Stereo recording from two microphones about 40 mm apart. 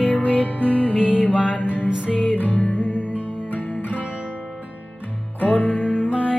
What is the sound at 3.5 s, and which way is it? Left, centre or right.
Music, left.